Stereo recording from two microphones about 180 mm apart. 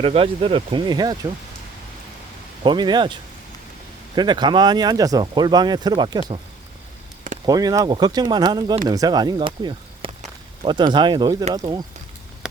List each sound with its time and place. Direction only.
0.0 s speech: 30° right (ahead or behind)
2.6 s speech: 25° right (ahead or behind)
7.4 s speech: 20° right (ahead or behind)
10.1 s a sound: 40° right (ahead or behind)
10.7 s speech: 25° right (ahead or behind)